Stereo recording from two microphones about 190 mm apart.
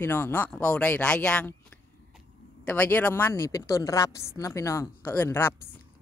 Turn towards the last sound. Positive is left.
turn(degrees=10)  # may be behind; listen again after turning